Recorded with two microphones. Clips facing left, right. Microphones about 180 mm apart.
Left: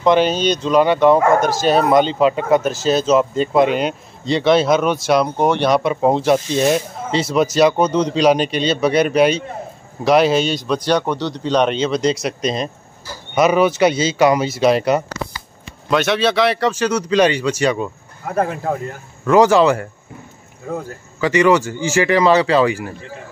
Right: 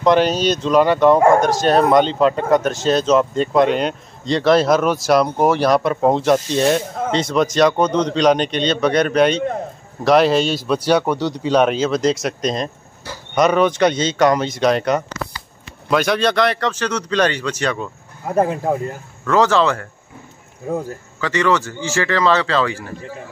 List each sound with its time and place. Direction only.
0.0 s speech: centre (ahead or behind)
18.2 s speech: 20° right (ahead or behind)
19.2 s speech: 15° left (ahead or behind)
21.2 s speech: 15° left (ahead or behind)